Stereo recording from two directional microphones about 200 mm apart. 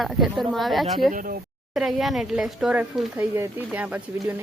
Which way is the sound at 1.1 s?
40° right (ahead or behind).